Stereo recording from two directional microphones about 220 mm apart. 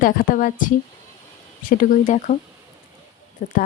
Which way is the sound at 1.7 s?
40° left (ahead or behind).